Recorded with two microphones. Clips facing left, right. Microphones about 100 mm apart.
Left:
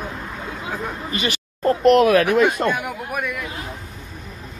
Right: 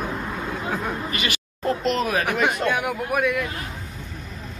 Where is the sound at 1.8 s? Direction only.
65° left (ahead or behind).